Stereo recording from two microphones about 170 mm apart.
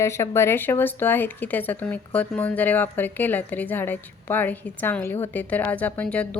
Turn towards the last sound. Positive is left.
turn(degrees=5)  # may be behind; listen again after turning